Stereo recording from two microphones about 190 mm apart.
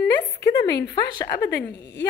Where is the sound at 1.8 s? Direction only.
60° left (ahead or behind).